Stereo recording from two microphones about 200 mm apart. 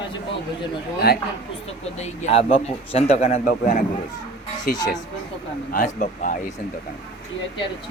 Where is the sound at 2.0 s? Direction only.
30° left (ahead or behind).